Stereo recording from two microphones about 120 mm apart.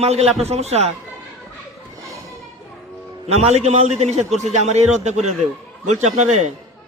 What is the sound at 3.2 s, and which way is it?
A man's voice, 65° right (ahead or behind).